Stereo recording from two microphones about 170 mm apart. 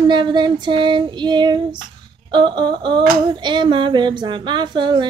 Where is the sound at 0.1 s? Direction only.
25° right (ahead or behind).